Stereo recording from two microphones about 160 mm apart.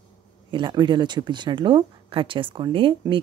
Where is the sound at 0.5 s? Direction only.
30° right (ahead or behind).